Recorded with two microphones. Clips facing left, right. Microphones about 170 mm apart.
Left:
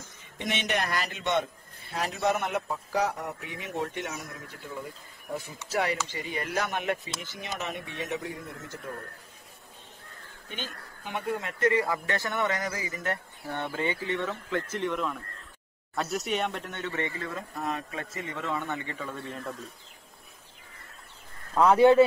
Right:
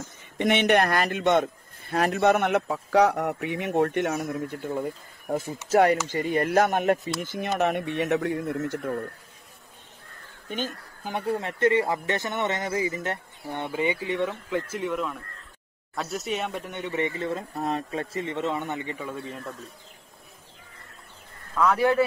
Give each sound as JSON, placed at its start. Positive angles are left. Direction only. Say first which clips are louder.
{"t": 0.4, "sound": "a man's voice", "louder": "right 9 dB", "side_deg": -60}
{"t": 11.1, "sound": "speech", "louder": "right 4 dB", "side_deg": -30}
{"t": 21.5, "sound": "speech", "louder": "left 3 dB", "side_deg": 25}